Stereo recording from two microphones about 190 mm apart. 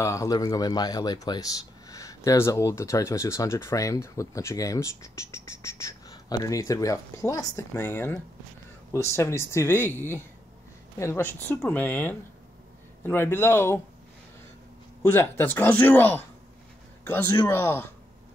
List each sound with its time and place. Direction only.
0.0 s speech: 15° left (ahead or behind)
15.0 s speech: 10° left (ahead or behind)